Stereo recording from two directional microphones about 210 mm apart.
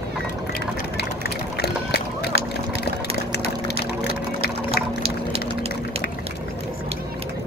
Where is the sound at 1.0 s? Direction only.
50° left (ahead or behind).